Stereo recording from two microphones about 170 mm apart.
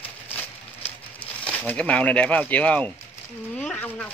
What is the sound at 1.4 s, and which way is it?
Speech, 5° left (ahead or behind).